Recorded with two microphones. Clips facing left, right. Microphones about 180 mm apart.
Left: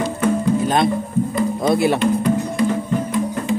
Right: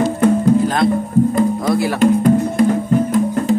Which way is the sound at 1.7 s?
20° left (ahead or behind).